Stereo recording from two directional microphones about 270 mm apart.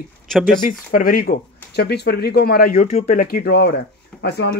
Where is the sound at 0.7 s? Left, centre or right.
Left.